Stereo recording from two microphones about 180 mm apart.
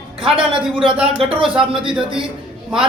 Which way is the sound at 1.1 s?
30° right (ahead or behind).